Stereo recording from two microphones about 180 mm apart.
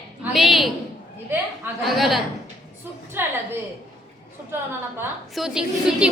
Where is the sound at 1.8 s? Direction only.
Centre (ahead or behind).